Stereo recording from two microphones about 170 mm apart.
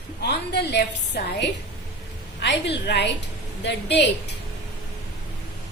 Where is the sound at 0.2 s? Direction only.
75° left (ahead or behind).